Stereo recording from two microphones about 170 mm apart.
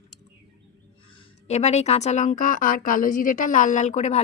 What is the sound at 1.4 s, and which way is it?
A woman's voice, 40° left (ahead or behind).